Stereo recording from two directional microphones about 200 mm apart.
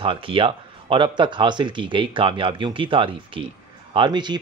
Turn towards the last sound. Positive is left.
turn(degrees=-20)  # may be behind; listen again after turning